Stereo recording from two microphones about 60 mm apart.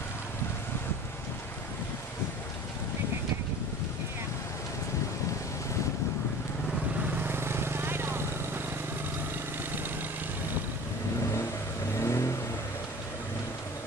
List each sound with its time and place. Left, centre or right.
7.2 s vehicle: right
12.0 s vehicle: left